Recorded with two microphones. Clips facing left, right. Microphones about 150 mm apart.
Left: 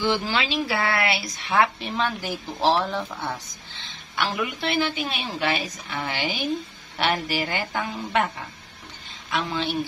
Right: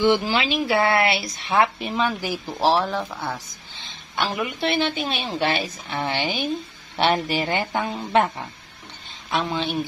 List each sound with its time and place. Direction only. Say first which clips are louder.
0.0 s speech: right 5 dB; 20° right (ahead or behind)
2.0 s speech: right 3 dB; 10° right (ahead or behind)
4.2 s speech: right 2 dB; 25° right (ahead or behind)
9.3 s speech: right 2 dB; 20° right (ahead or behind)